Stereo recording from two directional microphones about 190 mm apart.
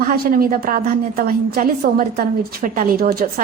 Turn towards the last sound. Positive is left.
turn(degrees=-50)  # may be behind; listen again after turning